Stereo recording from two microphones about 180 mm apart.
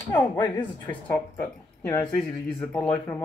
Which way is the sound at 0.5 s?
10° left (ahead or behind).